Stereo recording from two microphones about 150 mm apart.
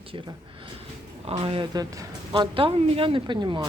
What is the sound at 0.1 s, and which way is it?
A woman's voice, 35° right (ahead or behind).